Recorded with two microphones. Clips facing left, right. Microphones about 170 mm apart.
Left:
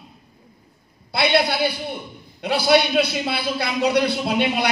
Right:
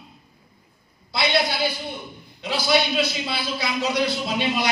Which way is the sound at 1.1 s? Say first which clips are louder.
Left 3 dB; 60° left (ahead or behind).